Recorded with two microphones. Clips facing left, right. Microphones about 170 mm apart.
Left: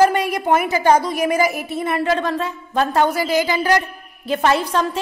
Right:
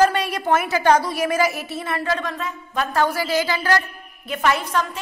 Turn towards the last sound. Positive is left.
turn(degrees=30)  # may be behind; listen again after turning